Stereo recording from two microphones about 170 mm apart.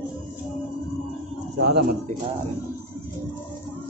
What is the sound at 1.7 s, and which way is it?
Speech, 75° right (ahead or behind).